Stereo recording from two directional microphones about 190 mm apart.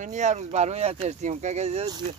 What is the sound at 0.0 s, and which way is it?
Speech, 40° right (ahead or behind).